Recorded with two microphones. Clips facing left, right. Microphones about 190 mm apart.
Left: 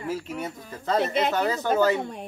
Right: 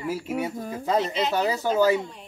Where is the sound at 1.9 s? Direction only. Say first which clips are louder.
Right 1 dB; 55° left (ahead or behind).